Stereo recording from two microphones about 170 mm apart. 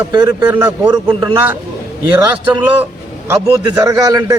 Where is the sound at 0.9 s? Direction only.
25° right (ahead or behind).